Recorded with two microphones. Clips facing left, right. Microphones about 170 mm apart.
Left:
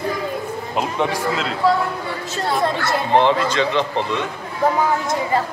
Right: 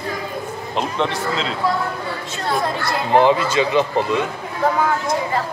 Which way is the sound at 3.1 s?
10° right (ahead or behind).